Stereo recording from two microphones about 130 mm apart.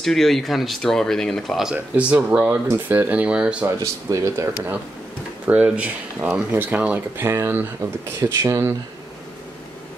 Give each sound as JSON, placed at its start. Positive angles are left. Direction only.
{"t": 0.0, "sound": "speech", "side_deg": 0}
{"t": 1.7, "sound": "speech", "side_deg": -10}
{"t": 3.8, "sound": "speech", "side_deg": -25}
{"t": 5.5, "sound": "speech", "side_deg": -10}